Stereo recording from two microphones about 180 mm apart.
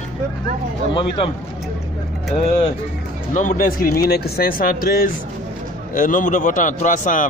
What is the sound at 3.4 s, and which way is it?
Speech, 50° left (ahead or behind).